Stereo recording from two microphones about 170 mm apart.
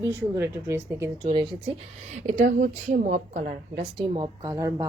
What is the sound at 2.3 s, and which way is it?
A woman's voice, 50° right (ahead or behind).